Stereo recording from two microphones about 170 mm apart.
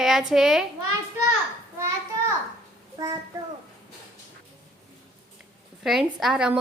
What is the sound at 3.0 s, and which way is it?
Speech, 25° right (ahead or behind).